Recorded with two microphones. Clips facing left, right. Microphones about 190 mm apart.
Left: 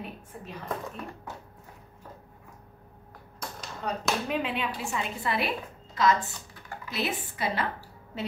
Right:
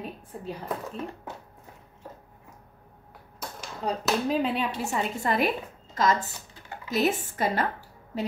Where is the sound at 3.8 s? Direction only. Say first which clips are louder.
Right 4 dB; 30° right (ahead or behind).